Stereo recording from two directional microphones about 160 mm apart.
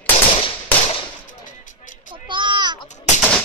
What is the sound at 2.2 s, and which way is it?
Sheep, 30° right (ahead or behind).